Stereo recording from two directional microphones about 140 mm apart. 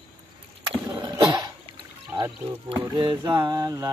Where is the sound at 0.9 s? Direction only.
30° right (ahead or behind).